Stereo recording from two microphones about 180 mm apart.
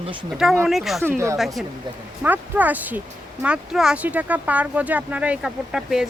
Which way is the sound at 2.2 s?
10° right (ahead or behind).